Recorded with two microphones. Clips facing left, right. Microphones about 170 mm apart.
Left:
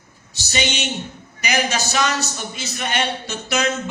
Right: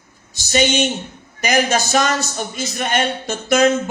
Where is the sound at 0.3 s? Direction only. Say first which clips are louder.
Right 7 dB; 50° right (ahead or behind).